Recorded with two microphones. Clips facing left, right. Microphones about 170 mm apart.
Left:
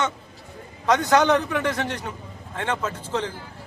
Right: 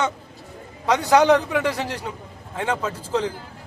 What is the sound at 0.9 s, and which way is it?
A man's voice, 10° right (ahead or behind).